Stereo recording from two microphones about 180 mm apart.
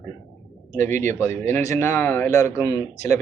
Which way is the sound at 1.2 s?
10° left (ahead or behind).